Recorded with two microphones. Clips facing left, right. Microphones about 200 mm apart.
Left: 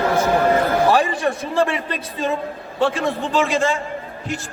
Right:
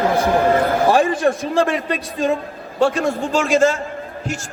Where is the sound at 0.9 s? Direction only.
50° right (ahead or behind).